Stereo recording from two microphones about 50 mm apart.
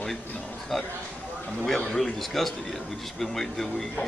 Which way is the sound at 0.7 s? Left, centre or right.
Centre.